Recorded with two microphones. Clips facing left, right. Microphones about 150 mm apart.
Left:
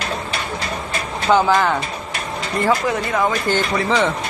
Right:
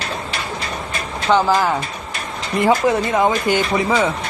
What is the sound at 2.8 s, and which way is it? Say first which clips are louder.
Speech: right 3 dB; 20° right (ahead or behind).